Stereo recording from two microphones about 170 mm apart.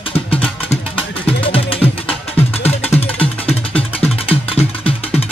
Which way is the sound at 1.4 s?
35° left (ahead or behind).